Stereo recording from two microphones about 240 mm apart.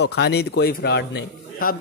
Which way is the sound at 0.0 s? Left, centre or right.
Left.